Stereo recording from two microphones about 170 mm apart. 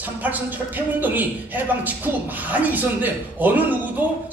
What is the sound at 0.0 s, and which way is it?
A man's voice, 10° right (ahead or behind).